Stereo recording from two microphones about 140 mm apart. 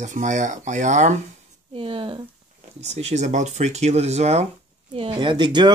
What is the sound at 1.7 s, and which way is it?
Speech, 40° right (ahead or behind).